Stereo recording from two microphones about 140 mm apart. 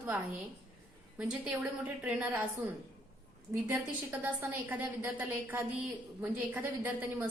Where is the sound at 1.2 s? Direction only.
5° right (ahead or behind).